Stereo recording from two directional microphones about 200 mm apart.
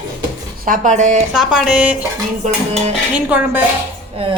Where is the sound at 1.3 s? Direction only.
5° right (ahead or behind).